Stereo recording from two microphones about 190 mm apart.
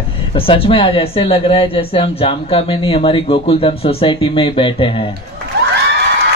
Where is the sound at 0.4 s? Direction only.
30° left (ahead or behind).